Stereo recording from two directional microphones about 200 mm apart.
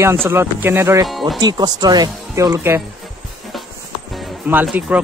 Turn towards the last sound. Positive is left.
turn(degrees=-5)  # may be behind; listen again after turning